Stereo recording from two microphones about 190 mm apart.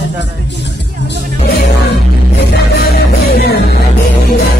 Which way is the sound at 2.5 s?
60° left (ahead or behind).